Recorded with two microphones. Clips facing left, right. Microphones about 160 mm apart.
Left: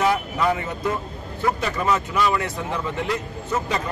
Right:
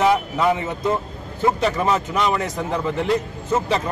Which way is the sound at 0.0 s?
20° right (ahead or behind).